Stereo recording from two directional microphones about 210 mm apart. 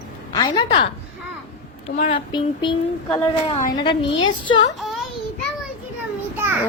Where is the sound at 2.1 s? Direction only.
20° left (ahead or behind).